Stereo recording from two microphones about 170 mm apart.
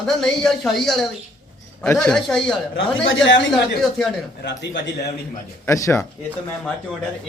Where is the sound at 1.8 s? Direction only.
15° left (ahead or behind).